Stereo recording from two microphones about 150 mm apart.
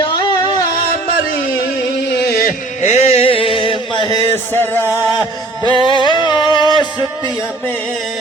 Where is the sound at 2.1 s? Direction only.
90° left.